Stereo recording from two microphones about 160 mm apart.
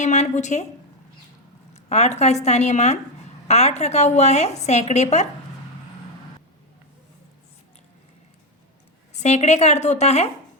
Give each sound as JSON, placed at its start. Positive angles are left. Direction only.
{"t": 0.0, "sound": "a woman's voice", "side_deg": 45}
{"t": 1.7, "sound": "a woman's voice", "side_deg": 45}
{"t": 9.1, "sound": "a woman's voice", "side_deg": 45}